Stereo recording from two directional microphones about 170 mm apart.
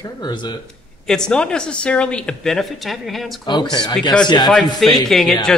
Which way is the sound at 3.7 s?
25° left (ahead or behind).